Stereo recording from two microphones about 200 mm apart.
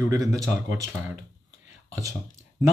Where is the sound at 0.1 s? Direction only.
15° right (ahead or behind).